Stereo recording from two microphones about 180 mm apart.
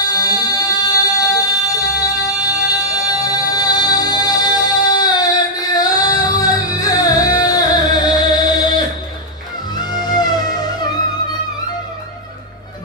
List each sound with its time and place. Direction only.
0.0 s music: 20° left (ahead or behind)